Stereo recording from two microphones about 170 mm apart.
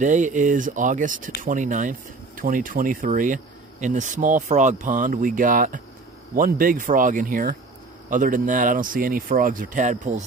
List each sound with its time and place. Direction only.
0.0 s speech: 50° right (ahead or behind)